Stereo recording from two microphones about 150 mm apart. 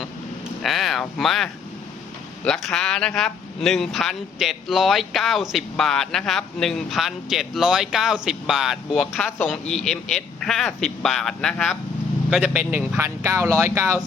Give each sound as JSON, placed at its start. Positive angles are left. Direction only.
{"t": 0.6, "sound": "speech", "side_deg": 0}
{"t": 12.3, "sound": "speech", "side_deg": -5}